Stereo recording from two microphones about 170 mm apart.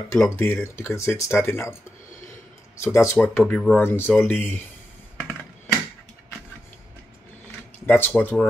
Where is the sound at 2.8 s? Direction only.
15° left (ahead or behind).